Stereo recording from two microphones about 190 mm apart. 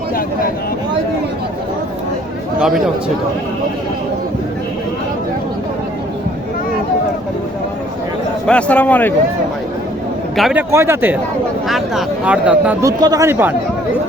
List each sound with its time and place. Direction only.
2.6 s speech: 5° right (ahead or behind)
8.4 s a man's voice: 5° left (ahead or behind)
10.3 s a man's voice: centre (ahead or behind)
10.7 s speech: 15° right (ahead or behind)
13.0 s speech: 20° right (ahead or behind)